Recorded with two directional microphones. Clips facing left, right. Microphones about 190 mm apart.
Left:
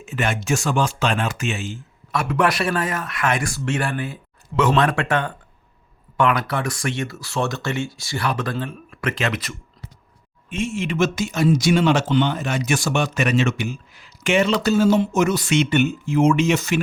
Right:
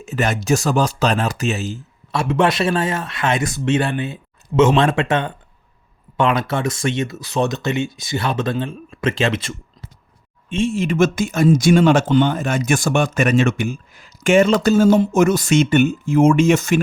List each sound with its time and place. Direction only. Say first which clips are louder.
0.0 s speech: right 3 dB; 40° right (ahead or behind)
2.2 s speech: right 4 dB; 25° right (ahead or behind); by 16.8 s 50° right (ahead or behind)